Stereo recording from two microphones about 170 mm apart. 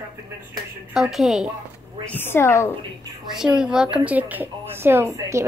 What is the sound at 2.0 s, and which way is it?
Speech, 10° left (ahead or behind).